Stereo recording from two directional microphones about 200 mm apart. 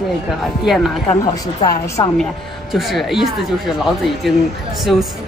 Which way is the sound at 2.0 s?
20° left (ahead or behind).